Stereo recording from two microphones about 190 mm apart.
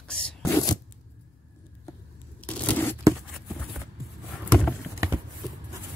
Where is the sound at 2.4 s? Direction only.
10° left (ahead or behind).